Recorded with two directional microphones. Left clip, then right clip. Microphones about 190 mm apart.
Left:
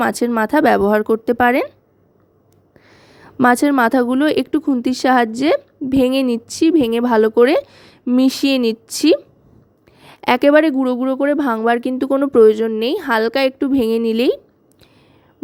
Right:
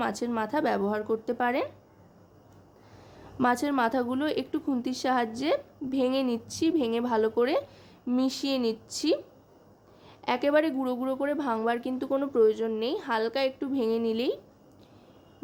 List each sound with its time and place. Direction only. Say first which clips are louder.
0.0 s a woman's voice: left 13 dB; 45° left (ahead or behind)
3.4 s a woman's voice: left 12 dB; 45° left (ahead or behind)